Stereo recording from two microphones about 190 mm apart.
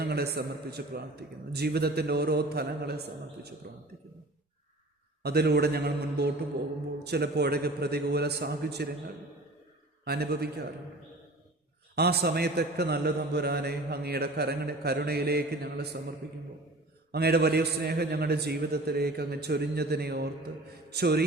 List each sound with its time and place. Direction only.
0.0 s a man's voice: 55° right (ahead or behind)
5.2 s a man's voice: 60° right (ahead or behind)
10.0 s a man's voice: 55° right (ahead or behind)
11.9 s a man's voice: 55° right (ahead or behind)
17.1 s a man's voice: 55° right (ahead or behind)